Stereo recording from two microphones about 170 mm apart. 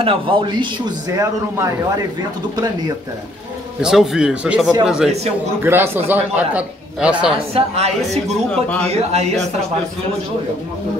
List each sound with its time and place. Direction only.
0.0 s a man's voice: 30° right (ahead or behind)
3.8 s a man's voice: 5° right (ahead or behind)
7.3 s a woman's voice: 35° right (ahead or behind)